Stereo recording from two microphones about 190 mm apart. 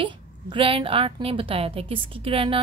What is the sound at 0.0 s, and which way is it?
A woman's voice, 25° right (ahead or behind).